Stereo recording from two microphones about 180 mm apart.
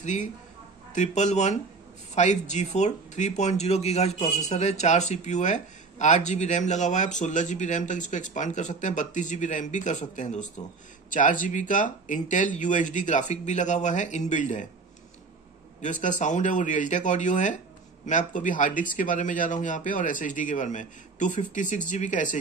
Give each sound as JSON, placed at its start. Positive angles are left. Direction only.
{"t": 0.0, "sound": "speech", "side_deg": 40}
{"t": 15.8, "sound": "speech", "side_deg": 45}